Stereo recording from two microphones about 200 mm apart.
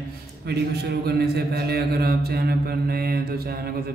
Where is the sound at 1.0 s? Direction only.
55° right (ahead or behind).